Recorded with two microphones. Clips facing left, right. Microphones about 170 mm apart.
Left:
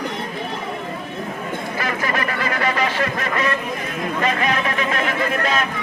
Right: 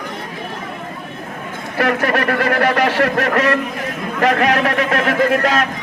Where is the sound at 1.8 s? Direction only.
65° right (ahead or behind).